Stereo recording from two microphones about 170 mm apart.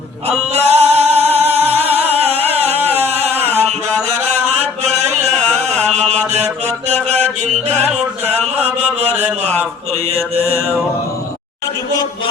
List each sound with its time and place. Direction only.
0.3 s music: 40° right (ahead or behind)
2.9 s a sound: 40° right (ahead or behind)
3.5 s mantra: 40° right (ahead or behind)
8.6 s mantra: 40° right (ahead or behind)